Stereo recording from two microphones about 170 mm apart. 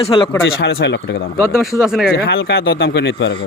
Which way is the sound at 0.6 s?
80° left.